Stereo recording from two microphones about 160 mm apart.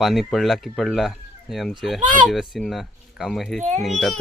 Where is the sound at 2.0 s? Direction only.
55° right (ahead or behind).